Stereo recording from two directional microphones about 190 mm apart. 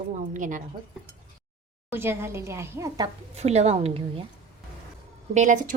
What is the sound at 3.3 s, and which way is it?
Speech, 35° right (ahead or behind).